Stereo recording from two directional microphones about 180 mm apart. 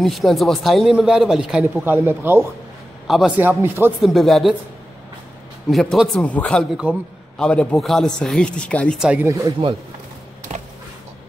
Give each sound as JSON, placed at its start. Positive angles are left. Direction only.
{"t": 0.0, "sound": "a man's voice", "side_deg": 0}
{"t": 4.0, "sound": "a man's voice", "side_deg": 0}
{"t": 5.7, "sound": "a man's voice", "side_deg": 0}
{"t": 9.3, "sound": "speech", "side_deg": -25}
{"t": 10.5, "sound": "a sound", "side_deg": -40}